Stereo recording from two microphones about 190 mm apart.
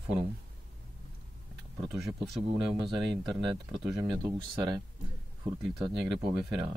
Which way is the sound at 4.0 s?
20° right (ahead or behind).